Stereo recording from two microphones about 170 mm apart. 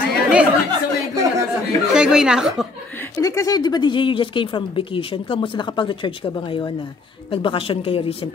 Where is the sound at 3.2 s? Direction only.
20° left (ahead or behind).